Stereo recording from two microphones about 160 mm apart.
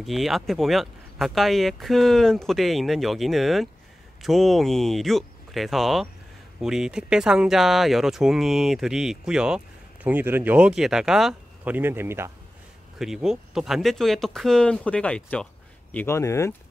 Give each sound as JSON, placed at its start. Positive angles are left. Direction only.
{"t": 0.0, "sound": "speech", "side_deg": 0}
{"t": 13.0, "sound": "speech", "side_deg": -5}